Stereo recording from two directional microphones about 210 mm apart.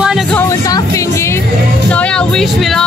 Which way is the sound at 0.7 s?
15° left (ahead or behind).